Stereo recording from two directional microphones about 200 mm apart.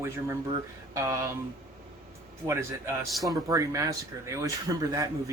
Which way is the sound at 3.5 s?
15° right (ahead or behind).